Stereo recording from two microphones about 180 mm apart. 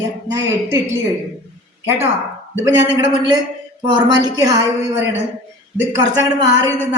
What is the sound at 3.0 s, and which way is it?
A woman's voice, 25° right (ahead or behind).